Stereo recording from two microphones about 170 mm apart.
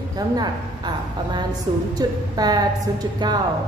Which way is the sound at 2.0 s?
20° right (ahead or behind).